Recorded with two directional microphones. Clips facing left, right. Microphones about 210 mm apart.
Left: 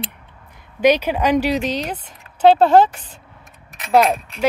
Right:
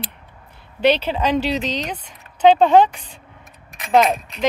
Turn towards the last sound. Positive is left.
turn(degrees=5)  # may be behind; listen again after turning